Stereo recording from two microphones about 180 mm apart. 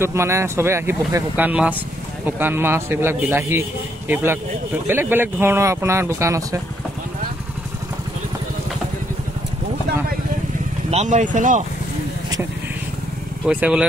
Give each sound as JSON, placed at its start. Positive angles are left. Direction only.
{"t": 0.0, "sound": "speech", "side_deg": -15}
{"t": 10.9, "sound": "speech", "side_deg": -40}
{"t": 13.5, "sound": "speech", "side_deg": -5}